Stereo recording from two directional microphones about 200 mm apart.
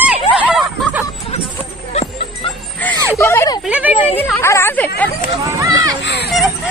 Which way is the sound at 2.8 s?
10° left (ahead or behind).